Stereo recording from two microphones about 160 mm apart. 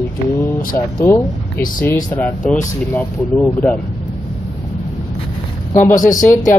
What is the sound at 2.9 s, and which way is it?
Speech, 10° left (ahead or behind).